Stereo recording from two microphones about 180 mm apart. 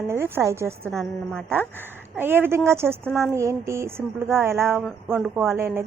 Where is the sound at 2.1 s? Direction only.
10° right (ahead or behind).